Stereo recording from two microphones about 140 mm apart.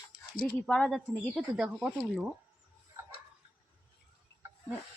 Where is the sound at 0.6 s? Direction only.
5° left (ahead or behind).